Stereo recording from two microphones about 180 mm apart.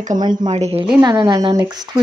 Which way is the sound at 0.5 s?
35° right (ahead or behind).